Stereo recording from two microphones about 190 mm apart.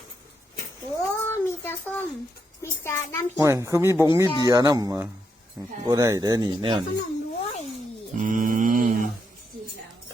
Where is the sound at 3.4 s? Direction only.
15° right (ahead or behind).